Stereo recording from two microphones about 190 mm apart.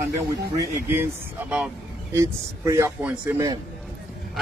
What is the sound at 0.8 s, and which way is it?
A man's voice, 10° right (ahead or behind).